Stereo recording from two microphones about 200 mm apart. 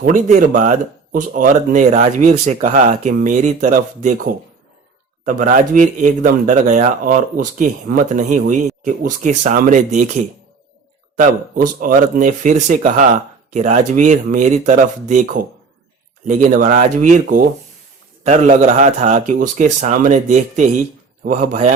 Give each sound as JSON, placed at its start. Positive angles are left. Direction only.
{"t": 0.0, "sound": "speech", "side_deg": -40}